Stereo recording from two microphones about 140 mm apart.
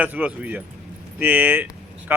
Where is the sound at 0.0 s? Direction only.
10° right (ahead or behind).